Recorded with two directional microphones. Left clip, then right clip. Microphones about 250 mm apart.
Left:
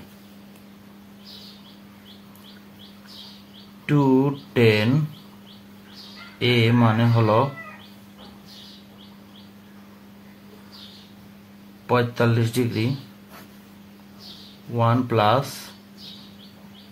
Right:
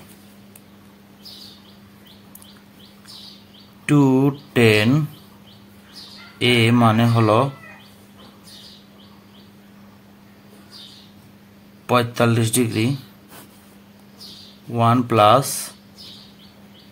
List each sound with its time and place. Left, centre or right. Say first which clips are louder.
3.8 s mantra: right 3 dB; right
6.4 s mantra: right 4 dB; right
11.9 s mantra: right 3 dB; right
14.7 s mantra: right 4 dB; right